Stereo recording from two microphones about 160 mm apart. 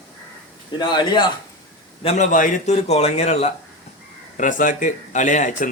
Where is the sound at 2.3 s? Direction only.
50° left (ahead or behind).